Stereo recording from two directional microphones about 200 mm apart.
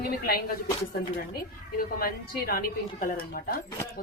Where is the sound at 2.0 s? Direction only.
45° left (ahead or behind).